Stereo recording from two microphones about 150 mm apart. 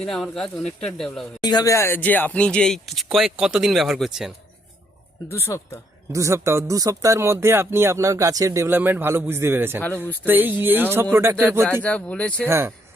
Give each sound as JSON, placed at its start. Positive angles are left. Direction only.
{"t": 0.0, "sound": "speech", "side_deg": 0}
{"t": 1.4, "sound": "speech", "side_deg": 30}
{"t": 5.3, "sound": "speech", "side_deg": 20}
{"t": 6.1, "sound": "speech", "side_deg": -20}
{"t": 11.6, "sound": "speech", "side_deg": 5}
{"t": 12.5, "sound": "speech", "side_deg": -15}